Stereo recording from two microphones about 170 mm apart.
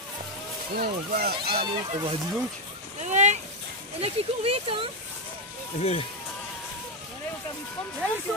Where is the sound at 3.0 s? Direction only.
45° right (ahead or behind).